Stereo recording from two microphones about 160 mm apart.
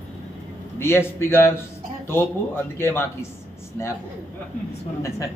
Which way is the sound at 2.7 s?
15° left (ahead or behind).